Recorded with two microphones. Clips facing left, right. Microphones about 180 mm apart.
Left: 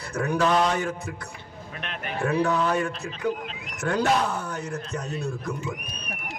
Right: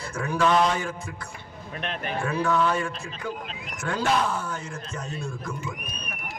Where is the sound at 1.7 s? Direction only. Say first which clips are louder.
Right 3 dB; 35° right (ahead or behind).